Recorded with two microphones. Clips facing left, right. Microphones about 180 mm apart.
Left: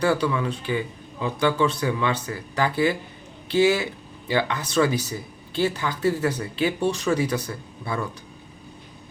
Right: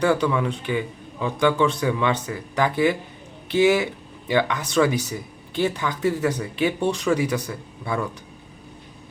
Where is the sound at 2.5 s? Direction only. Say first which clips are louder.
Right 2 dB; 20° right (ahead or behind).